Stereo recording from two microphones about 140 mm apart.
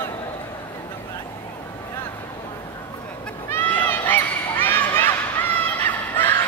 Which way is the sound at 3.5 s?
15° left (ahead or behind).